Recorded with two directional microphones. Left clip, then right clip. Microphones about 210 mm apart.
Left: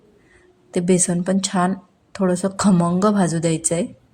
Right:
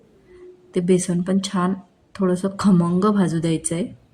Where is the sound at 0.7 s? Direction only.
25° left (ahead or behind).